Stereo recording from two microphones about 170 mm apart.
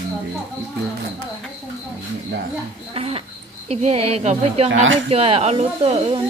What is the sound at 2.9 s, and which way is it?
Speech, 35° right (ahead or behind).